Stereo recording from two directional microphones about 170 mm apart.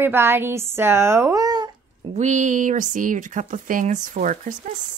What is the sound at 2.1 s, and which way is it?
Speech, 45° right (ahead or behind).